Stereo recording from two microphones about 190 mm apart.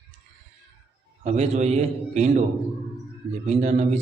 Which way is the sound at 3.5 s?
40° right (ahead or behind).